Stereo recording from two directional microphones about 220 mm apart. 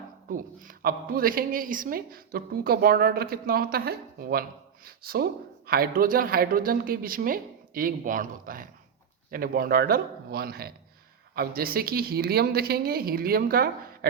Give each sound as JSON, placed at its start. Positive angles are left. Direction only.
{"t": 0.3, "sound": "a woman's voice", "side_deg": -40}